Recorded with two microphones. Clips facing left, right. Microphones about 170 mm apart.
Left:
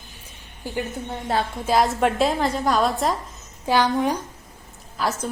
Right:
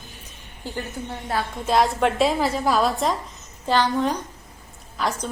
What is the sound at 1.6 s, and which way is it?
A woman's voice, centre (ahead or behind).